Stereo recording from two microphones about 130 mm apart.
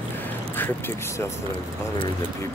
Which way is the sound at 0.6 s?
20° left (ahead or behind).